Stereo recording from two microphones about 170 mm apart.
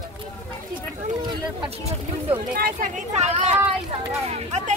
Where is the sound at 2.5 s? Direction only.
60° right (ahead or behind).